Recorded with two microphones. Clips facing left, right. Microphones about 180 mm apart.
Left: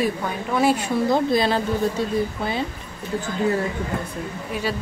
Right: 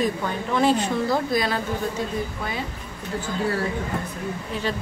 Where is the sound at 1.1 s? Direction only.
25° left (ahead or behind).